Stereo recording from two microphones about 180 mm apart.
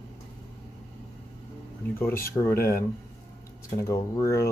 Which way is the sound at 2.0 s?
15° left (ahead or behind).